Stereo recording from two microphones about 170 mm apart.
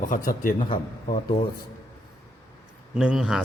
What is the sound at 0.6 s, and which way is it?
Speech, 35° left (ahead or behind).